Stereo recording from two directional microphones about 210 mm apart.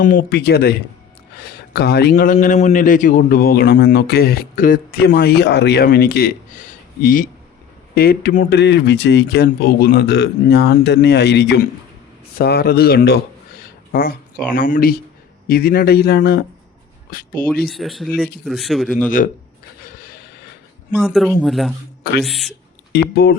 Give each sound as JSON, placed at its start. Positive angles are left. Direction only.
{"t": 0.0, "sound": "a man's voice", "side_deg": 40}
{"t": 1.7, "sound": "a man's voice", "side_deg": 50}
{"t": 13.6, "sound": "a sound", "side_deg": 45}
{"t": 14.5, "sound": "a man's voice", "side_deg": 40}
{"t": 17.7, "sound": "speech", "side_deg": 0}
{"t": 19.8, "sound": "a sound", "side_deg": 45}
{"t": 20.9, "sound": "speech", "side_deg": 0}
{"t": 22.9, "sound": "speech", "side_deg": 50}